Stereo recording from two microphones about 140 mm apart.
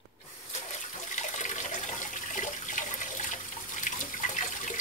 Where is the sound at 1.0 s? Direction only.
60° left (ahead or behind).